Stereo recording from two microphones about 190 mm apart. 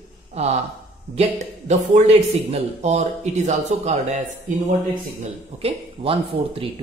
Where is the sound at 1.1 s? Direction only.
35° right (ahead or behind).